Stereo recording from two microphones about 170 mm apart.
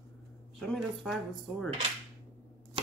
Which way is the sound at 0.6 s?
Centre (ahead or behind).